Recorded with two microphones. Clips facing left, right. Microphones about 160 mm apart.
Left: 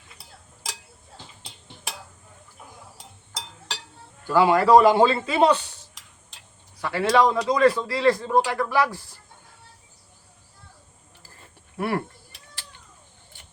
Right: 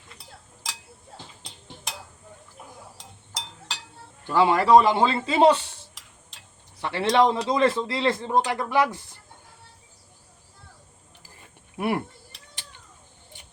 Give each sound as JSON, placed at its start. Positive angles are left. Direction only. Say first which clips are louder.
{"t": 4.4, "sound": "a man's voice", "louder": "left 1 dB", "side_deg": -25}
{"t": 6.8, "sound": "a man's voice", "louder": "left 1 dB", "side_deg": -25}
{"t": 11.2, "sound": "a sound", "louder": "left 1 dB", "side_deg": -15}
{"t": 13.3, "sound": "vehicle", "louder": "right 1 dB", "side_deg": -20}